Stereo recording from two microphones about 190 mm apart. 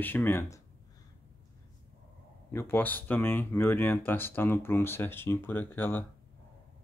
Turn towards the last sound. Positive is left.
turn(degrees=10)  # may be behind; listen again after turning